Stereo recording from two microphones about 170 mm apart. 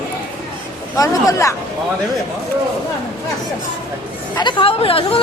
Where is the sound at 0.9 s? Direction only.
20° left (ahead or behind).